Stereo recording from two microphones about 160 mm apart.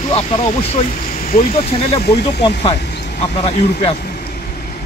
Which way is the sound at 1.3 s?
65° left (ahead or behind).